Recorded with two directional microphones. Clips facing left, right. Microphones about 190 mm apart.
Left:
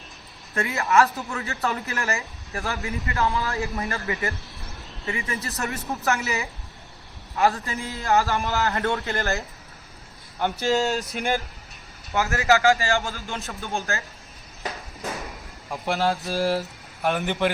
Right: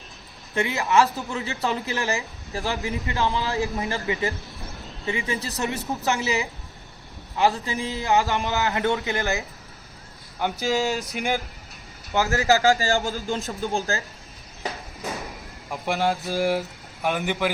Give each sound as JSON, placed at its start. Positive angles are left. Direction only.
{"t": 0.5, "sound": "a man's voice", "side_deg": -20}
{"t": 2.6, "sound": "a man's voice", "side_deg": -20}
{"t": 10.8, "sound": "a man's voice", "side_deg": -15}
{"t": 12.1, "sound": "a man's voice", "side_deg": -30}
{"t": 14.6, "sound": "a sound", "side_deg": -5}
{"t": 15.9, "sound": "a man's voice", "side_deg": -15}